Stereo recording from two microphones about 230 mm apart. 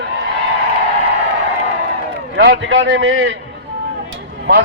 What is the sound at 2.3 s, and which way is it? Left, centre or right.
A man's voice, right.